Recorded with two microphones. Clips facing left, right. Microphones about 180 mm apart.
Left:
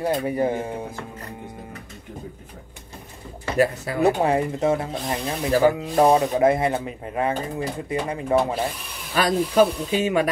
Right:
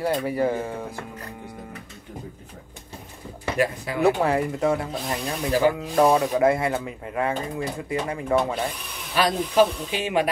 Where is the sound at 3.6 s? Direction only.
40° left (ahead or behind).